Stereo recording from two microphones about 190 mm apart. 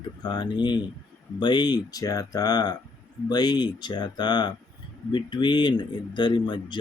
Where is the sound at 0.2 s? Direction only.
25° left (ahead or behind).